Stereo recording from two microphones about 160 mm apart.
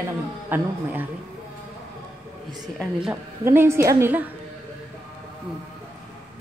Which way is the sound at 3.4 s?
15° right (ahead or behind).